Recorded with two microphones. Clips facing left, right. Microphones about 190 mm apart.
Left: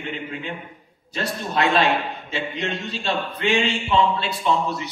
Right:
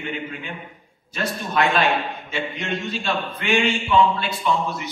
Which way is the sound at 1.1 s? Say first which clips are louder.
Right 1 dB; 30° left (ahead or behind).